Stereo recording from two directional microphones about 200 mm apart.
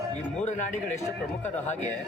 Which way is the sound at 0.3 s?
35° left (ahead or behind).